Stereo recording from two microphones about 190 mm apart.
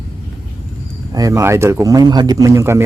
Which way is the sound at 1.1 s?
15° right (ahead or behind).